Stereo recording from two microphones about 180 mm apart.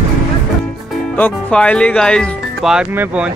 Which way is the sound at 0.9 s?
10° left (ahead or behind).